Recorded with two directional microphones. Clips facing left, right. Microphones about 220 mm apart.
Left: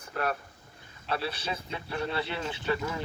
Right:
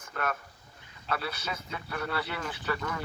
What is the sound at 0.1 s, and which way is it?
Speech, 35° left (ahead or behind).